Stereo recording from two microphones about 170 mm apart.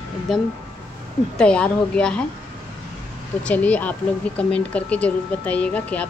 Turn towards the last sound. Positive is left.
turn(degrees=10)  # may be behind; listen again after turning